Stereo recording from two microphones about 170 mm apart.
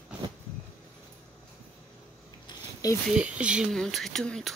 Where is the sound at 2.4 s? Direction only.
20° left (ahead or behind).